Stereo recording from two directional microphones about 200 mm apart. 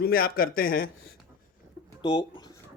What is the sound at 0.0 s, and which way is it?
Speech, 45° left (ahead or behind).